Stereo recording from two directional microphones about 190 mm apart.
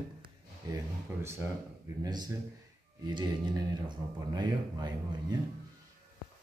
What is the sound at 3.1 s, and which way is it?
Speech, 20° right (ahead or behind).